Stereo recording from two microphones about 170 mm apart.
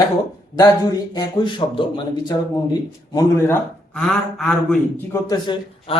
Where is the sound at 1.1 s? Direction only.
30° left (ahead or behind).